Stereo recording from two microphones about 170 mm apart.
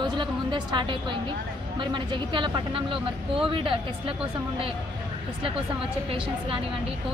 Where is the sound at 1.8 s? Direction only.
30° right (ahead or behind).